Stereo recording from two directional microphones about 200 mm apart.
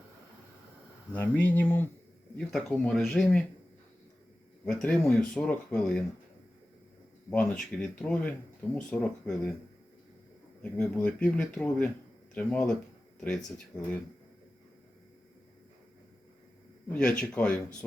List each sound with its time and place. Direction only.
1.1 s speech: 10° left (ahead or behind)
4.6 s speech: 5° left (ahead or behind)
7.3 s speech: 5° left (ahead or behind)
10.6 s speech: 5° left (ahead or behind)
16.9 s speech: 5° left (ahead or behind)